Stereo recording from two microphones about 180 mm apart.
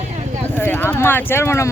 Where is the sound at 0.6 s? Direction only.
10° left (ahead or behind).